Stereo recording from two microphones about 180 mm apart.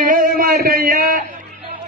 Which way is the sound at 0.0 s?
50° right (ahead or behind).